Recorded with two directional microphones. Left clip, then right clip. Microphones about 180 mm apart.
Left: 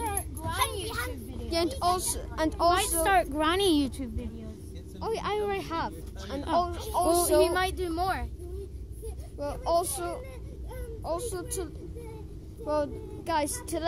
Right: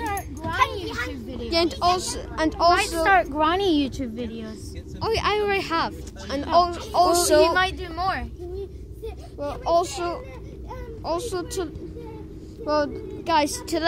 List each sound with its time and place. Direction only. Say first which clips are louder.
0.0 s a sound: right 5 dB; 50° left (ahead or behind)
1.5 s speech: right 6 dB; 10° left (ahead or behind)
3.0 s speech: right 6 dB; 45° left (ahead or behind)
5.0 s speech: right 7 dB; 5° left (ahead or behind)
6.9 s a sound: right 3 dB; 10° right (ahead or behind)
7.5 s a woman's voice: right 5 dB; 25° left (ahead or behind)
9.4 s a child's voice: right 6 dB; 10° left (ahead or behind); by 13.9 s 5° right (ahead or behind)